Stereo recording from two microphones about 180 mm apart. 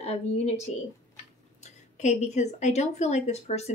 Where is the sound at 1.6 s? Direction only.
40° left (ahead or behind).